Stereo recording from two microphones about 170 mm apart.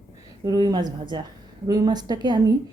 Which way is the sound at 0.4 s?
25° right (ahead or behind).